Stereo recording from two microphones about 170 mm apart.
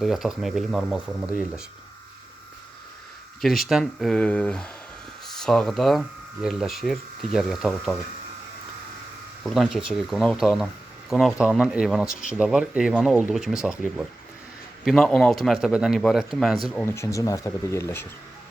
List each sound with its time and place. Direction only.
0.0 s speech: centre (ahead or behind)
3.4 s speech: centre (ahead or behind)
9.4 s speech: centre (ahead or behind)
16.8 s speech: 15° left (ahead or behind)